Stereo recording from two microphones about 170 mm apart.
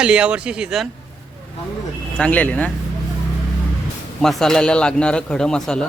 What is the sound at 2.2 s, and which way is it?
Speech, 10° left (ahead or behind).